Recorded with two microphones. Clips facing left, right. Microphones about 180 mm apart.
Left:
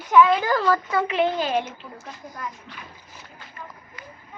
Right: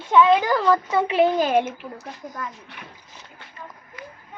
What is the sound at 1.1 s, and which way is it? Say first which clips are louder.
Speech: right 6 dB; 40° right (ahead or behind).